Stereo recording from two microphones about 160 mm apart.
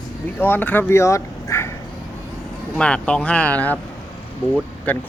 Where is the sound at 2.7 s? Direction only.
5° left (ahead or behind).